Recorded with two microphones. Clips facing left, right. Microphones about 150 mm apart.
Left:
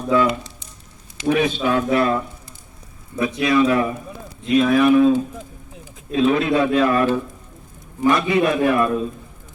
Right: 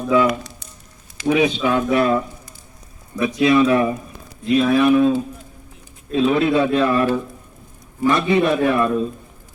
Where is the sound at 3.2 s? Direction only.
25° right (ahead or behind).